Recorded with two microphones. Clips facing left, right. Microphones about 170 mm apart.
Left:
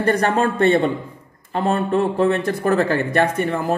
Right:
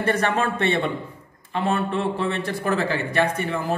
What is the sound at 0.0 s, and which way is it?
A man's voice, 40° left (ahead or behind).